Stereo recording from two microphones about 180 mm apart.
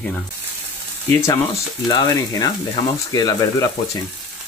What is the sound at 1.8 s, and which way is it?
Speech, 20° left (ahead or behind).